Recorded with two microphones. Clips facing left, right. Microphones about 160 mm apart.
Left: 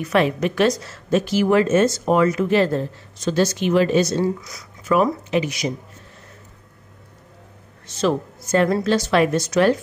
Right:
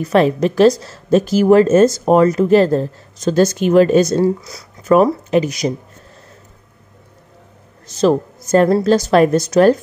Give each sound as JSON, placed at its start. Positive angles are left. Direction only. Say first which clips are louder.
{"t": 0.0, "sound": "a woman's voice", "louder": "right 5 dB", "side_deg": -35}
{"t": 4.4, "sound": "a woman's voice", "louder": "right 3 dB", "side_deg": -30}
{"t": 7.8, "sound": "a woman's voice", "louder": "right 6 dB", "side_deg": -40}